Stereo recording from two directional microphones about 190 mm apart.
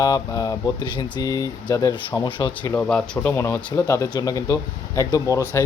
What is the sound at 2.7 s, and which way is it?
Speech, 5° left (ahead or behind).